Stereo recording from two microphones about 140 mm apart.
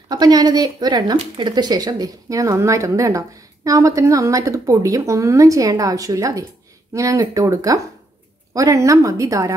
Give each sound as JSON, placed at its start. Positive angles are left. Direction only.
{"t": 0.1, "sound": "a woman's voice", "side_deg": -30}